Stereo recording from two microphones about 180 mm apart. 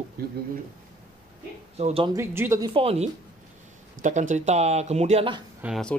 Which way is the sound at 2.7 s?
35° right (ahead or behind).